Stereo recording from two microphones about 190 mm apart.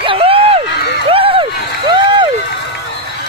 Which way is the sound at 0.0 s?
30° right (ahead or behind).